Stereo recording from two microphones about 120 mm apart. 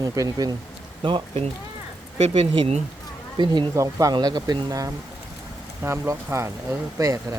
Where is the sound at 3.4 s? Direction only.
40° right (ahead or behind).